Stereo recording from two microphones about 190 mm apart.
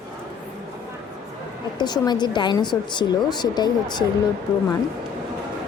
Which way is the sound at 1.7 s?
20° left (ahead or behind).